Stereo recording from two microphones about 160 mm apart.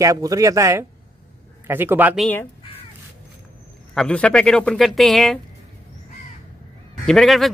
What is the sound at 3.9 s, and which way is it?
Speech, 5° left (ahead or behind).